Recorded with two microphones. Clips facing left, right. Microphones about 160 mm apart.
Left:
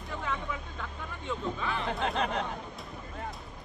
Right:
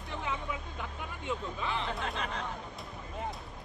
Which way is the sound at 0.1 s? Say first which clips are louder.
Left 1 dB; 15° right (ahead or behind).